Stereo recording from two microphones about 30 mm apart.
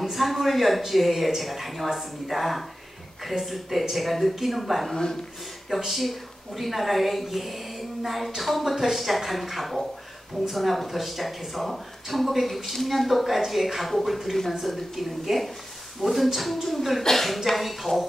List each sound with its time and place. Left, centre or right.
0.0 s speech: centre
4.9 s speech: centre
5.9 s speech: centre